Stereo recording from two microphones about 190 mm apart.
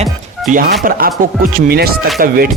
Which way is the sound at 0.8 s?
50° right (ahead or behind).